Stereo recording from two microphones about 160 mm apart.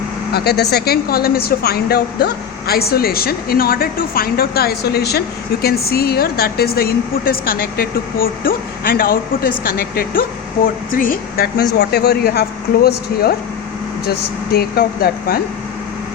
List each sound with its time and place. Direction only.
0.3 s a woman's voice: 90° left
5.6 s a woman's voice: 75° left (ahead or behind)
11.8 s a woman's voice: 80° left